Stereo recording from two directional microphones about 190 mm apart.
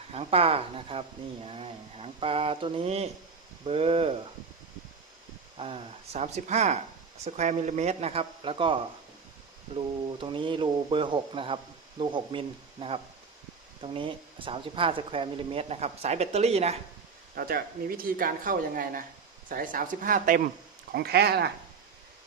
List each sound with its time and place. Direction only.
0.1 s speech: 30° right (ahead or behind)
5.5 s speech: 30° right (ahead or behind)
17.3 s speech: 50° right (ahead or behind)
20.9 s speech: 55° right (ahead or behind)